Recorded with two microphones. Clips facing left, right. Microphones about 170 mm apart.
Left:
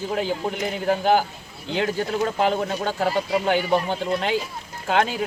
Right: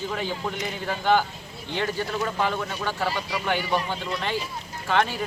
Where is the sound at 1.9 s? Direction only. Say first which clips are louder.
Left 4 dB; 40° left (ahead or behind).